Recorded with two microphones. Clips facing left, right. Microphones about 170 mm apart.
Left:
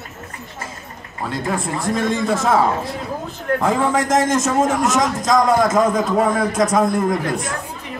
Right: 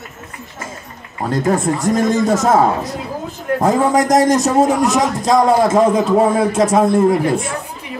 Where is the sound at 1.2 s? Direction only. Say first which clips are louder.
Right 7 dB; 45° right (ahead or behind); by 7.4 s 30° right (ahead or behind).